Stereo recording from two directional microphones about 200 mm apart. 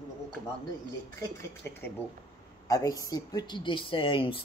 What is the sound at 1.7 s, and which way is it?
Speech, 10° left (ahead or behind).